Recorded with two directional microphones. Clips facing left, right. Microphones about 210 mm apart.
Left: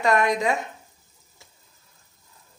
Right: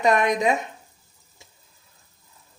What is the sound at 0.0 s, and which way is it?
Speech, 20° right (ahead or behind).